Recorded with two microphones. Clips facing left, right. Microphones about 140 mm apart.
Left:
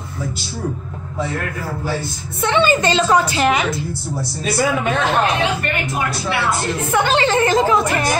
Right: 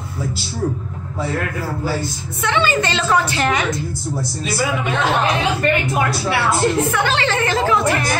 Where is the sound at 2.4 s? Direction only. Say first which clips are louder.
Left 3 dB; 25° left (ahead or behind).